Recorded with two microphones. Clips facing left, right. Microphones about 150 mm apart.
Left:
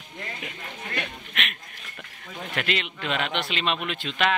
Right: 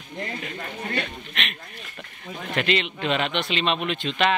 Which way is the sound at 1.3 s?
5° left (ahead or behind).